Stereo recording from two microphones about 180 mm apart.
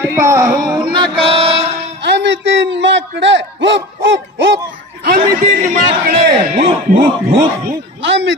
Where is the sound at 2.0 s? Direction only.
80° right.